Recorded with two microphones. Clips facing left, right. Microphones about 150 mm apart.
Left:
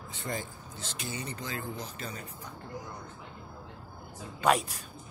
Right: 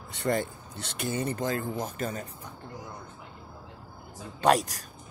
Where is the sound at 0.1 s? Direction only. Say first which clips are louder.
Right 9 dB; 70° right (ahead or behind); by 2.2 s 50° right (ahead or behind).